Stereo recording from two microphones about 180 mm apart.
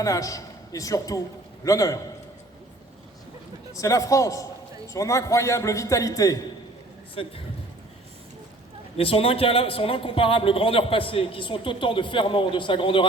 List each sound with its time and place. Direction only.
0.0 s a man's voice: 20° left (ahead or behind)
3.8 s a man's voice: 20° left (ahead or behind)
7.2 s a man's voice: 30° left (ahead or behind)
9.0 s a man's voice: 30° left (ahead or behind)